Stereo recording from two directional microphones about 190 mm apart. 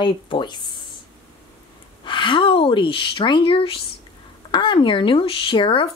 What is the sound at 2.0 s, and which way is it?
Speech, 25° left (ahead or behind).